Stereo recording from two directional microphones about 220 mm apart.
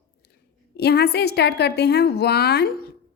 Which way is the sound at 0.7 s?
45° left (ahead or behind).